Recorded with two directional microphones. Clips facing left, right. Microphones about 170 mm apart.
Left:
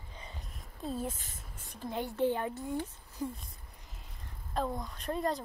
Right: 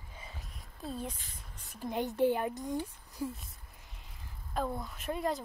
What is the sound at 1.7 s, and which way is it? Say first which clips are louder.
A woman's voice: right 2 dB; 15° right (ahead or behind).